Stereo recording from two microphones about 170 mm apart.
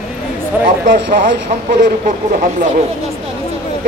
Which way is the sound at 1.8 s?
45° right (ahead or behind).